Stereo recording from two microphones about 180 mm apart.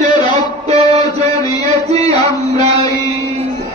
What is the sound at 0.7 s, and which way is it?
Music, 35° right (ahead or behind).